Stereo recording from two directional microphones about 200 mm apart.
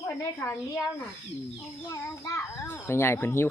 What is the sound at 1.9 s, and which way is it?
A child's voice, 15° left (ahead or behind).